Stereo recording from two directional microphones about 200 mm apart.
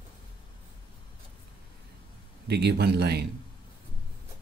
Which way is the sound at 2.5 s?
55° right (ahead or behind).